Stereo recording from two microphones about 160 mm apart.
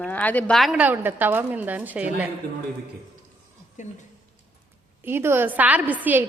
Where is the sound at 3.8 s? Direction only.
50° left (ahead or behind).